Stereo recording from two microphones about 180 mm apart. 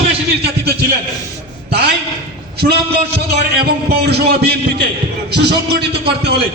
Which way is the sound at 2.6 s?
50° right (ahead or behind).